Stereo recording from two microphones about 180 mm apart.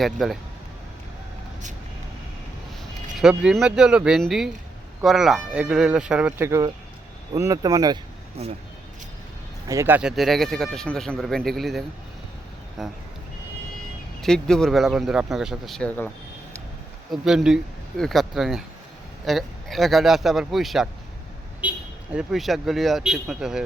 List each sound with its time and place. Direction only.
0.0 s speech: centre (ahead or behind)
3.2 s speech: 5° right (ahead or behind); by 7.9 s 20° right (ahead or behind)
9.6 s speech: 15° right (ahead or behind)
12.8 s speech: centre (ahead or behind)
14.2 s speech: 5° left (ahead or behind)
17.1 s speech: 5° right (ahead or behind)